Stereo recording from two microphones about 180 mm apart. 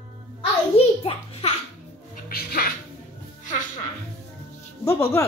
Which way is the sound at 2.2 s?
55° left (ahead or behind).